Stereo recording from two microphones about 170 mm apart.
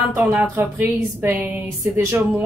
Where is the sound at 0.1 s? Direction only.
10° right (ahead or behind).